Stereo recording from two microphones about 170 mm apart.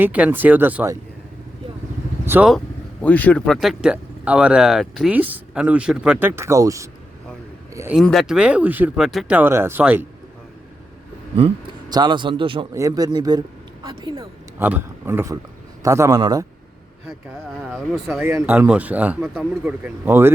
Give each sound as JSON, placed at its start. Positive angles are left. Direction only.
{"t": 0.0, "sound": "speech", "side_deg": -10}
{"t": 2.2, "sound": "speech", "side_deg": -10}
{"t": 3.0, "sound": "a man's voice", "side_deg": 10}
{"t": 7.9, "sound": "speech", "side_deg": 0}
{"t": 9.4, "sound": "speech", "side_deg": -15}
{"t": 11.3, "sound": "a man's voice", "side_deg": -30}
{"t": 12.7, "sound": "a man's voice", "side_deg": -20}
{"t": 14.6, "sound": "a man's voice", "side_deg": -10}
{"t": 17.7, "sound": "speech", "side_deg": 0}
{"t": 18.2, "sound": "speech", "side_deg": -15}